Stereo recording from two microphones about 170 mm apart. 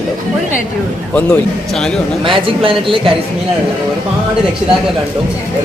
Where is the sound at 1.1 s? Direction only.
5° left (ahead or behind).